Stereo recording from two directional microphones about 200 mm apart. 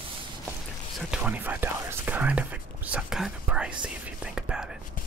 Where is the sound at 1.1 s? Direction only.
5° right (ahead or behind).